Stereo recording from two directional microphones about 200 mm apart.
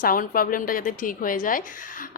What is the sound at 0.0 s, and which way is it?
A woman's voice, 45° left (ahead or behind).